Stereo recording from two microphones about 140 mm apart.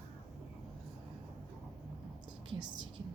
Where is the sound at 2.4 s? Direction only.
35° right (ahead or behind).